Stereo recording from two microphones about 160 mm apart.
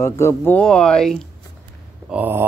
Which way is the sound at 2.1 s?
10° right (ahead or behind).